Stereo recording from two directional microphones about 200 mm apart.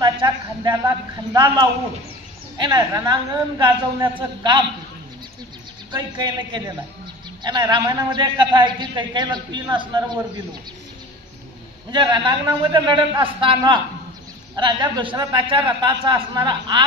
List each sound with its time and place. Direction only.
0.0 s a sound: 20° right (ahead or behind)
1.3 s a man's voice: 20° right (ahead or behind)
5.9 s a man's voice: 20° right (ahead or behind)
11.9 s a man's voice: 25° right (ahead or behind)